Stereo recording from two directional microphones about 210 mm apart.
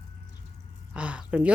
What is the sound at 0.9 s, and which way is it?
Speech, 5° right (ahead or behind).